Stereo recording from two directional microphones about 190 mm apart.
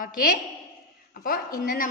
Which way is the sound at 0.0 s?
45° left (ahead or behind).